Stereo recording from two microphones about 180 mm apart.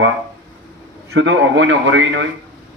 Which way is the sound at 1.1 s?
80° right.